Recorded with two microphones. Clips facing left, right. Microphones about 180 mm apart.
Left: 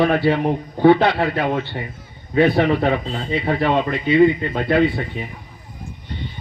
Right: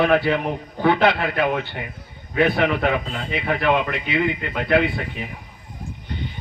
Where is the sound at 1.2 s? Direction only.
25° left (ahead or behind).